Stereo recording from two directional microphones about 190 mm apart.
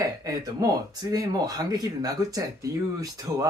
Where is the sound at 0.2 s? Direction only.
20° right (ahead or behind).